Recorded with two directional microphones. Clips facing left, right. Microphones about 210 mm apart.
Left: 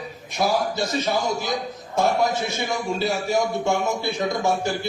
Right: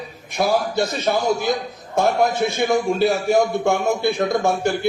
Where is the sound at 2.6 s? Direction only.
55° right (ahead or behind).